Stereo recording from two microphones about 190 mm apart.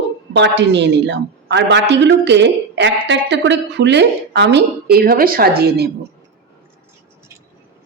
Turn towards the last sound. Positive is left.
turn(degrees=-55)  # may be behind; listen again after turning